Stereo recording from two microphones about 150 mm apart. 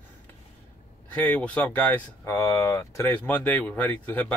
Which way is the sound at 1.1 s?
10° left (ahead or behind).